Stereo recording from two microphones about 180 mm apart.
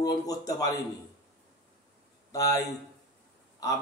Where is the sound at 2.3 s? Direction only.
20° left (ahead or behind).